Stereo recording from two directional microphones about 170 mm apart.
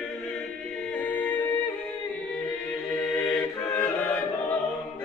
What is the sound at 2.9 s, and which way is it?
Chant, 5° left (ahead or behind).